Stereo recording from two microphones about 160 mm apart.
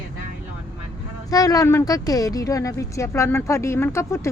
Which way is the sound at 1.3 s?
20° left (ahead or behind).